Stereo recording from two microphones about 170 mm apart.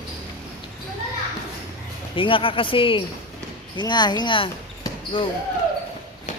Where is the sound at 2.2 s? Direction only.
30° left (ahead or behind).